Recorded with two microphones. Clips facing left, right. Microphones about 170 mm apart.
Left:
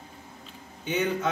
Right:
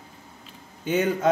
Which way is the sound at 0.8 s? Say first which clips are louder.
Right 4 dB; 45° right (ahead or behind).